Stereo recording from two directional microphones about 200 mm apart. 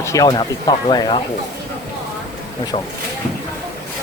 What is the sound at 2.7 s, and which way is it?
Speech, 30° left (ahead or behind).